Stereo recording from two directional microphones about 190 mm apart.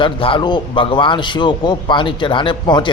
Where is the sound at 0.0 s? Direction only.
25° left (ahead or behind).